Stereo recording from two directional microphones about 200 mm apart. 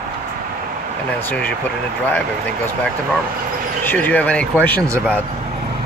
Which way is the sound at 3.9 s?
10° left (ahead or behind).